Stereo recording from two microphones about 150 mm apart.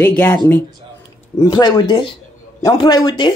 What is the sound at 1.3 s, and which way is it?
Speech, 25° left (ahead or behind).